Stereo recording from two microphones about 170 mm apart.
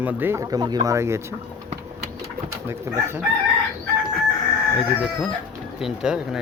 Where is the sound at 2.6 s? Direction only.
15° right (ahead or behind).